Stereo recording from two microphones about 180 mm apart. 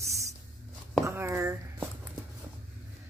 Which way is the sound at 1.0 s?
15° right (ahead or behind).